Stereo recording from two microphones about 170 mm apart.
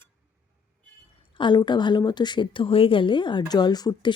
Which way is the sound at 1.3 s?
30° left (ahead or behind).